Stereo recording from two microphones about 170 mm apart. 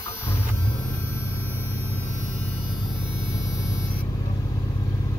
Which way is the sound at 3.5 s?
20° left (ahead or behind).